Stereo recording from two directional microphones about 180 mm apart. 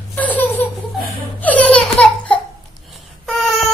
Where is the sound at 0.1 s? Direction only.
10° left (ahead or behind).